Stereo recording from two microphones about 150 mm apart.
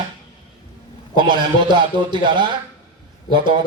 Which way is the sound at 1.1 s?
30° right (ahead or behind).